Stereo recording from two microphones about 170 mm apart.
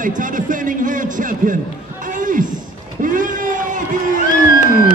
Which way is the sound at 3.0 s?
50° right (ahead or behind).